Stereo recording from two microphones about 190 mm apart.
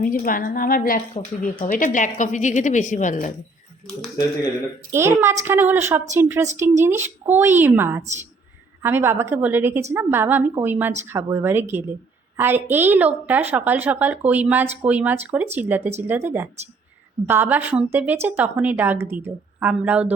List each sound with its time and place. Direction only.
0.0 s a woman's voice: 45° left (ahead or behind)
4.9 s a woman's voice: 15° right (ahead or behind)